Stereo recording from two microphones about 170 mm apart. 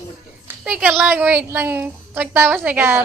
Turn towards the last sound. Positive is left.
turn(degrees=-10)  # may be behind; listen again after turning